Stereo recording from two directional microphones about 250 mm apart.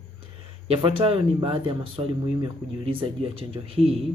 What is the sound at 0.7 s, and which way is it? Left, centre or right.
Speech, right.